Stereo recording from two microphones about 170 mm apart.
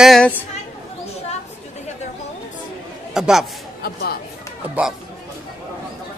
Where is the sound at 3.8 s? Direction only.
65° left (ahead or behind).